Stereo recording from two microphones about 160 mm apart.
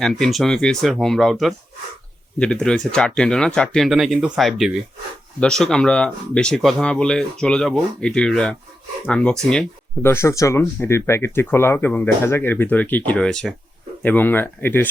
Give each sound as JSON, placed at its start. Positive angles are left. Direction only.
{"t": 0.0, "sound": "speech", "side_deg": 0}